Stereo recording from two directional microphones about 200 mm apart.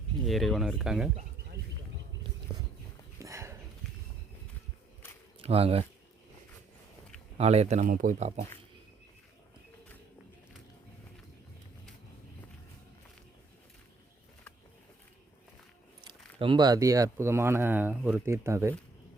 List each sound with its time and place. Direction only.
0.3 s speech: centre (ahead or behind)
3.2 s a sound: 15° right (ahead or behind)
5.4 s speech: 30° right (ahead or behind)
7.3 s speech: 30° right (ahead or behind)
16.4 s speech: 20° right (ahead or behind)